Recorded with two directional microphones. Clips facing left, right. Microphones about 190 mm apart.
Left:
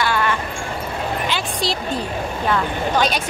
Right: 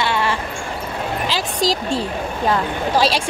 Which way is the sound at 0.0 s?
25° right (ahead or behind).